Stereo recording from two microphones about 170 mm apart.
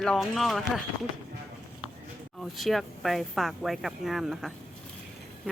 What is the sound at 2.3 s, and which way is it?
Speech, centre (ahead or behind).